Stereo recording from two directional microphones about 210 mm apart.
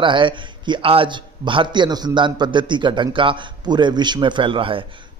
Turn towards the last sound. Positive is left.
turn(degrees=-25)  # may be behind; listen again after turning